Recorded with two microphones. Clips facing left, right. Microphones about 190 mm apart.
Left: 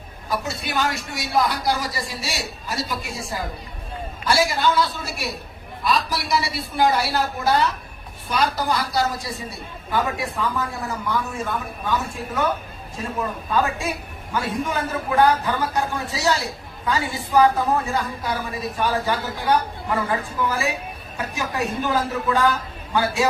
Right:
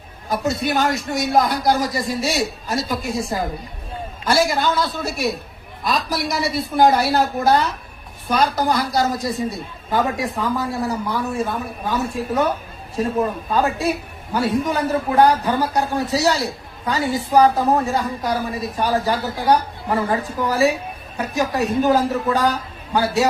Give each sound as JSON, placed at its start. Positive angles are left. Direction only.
{"t": 0.3, "sound": "speech", "side_deg": -45}
{"t": 4.3, "sound": "speech", "side_deg": -45}
{"t": 10.4, "sound": "a woman's voice", "side_deg": -35}